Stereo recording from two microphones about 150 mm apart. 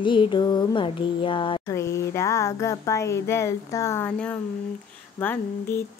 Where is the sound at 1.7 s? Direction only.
20° left (ahead or behind).